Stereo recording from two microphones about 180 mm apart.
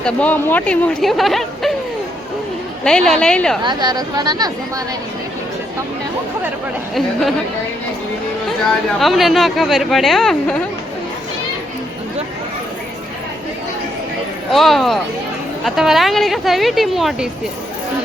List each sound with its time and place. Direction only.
0.0 s speech: 10° left (ahead or behind)
2.8 s speech: 5° left (ahead or behind)
3.6 s speech: 25° right (ahead or behind)
6.9 s speech: centre (ahead or behind)
9.0 s speech: centre (ahead or behind)
14.5 s speech: centre (ahead or behind)